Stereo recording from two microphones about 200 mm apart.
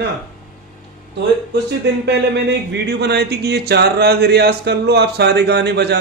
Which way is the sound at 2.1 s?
55° right (ahead or behind).